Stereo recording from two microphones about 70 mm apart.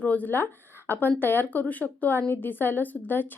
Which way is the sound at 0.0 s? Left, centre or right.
Left.